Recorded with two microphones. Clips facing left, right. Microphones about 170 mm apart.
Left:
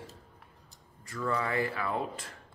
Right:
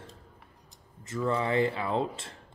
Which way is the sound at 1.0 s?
20° right (ahead or behind).